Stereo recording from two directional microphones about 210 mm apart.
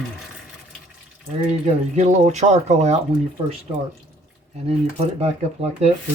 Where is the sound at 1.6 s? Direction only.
35° right (ahead or behind).